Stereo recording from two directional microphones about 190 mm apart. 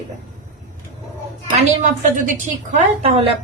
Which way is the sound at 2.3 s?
35° right (ahead or behind).